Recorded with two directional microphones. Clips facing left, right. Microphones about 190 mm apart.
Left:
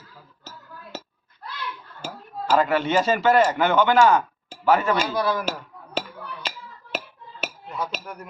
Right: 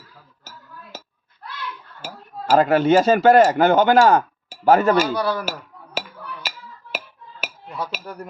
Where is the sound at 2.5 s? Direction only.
45° right (ahead or behind).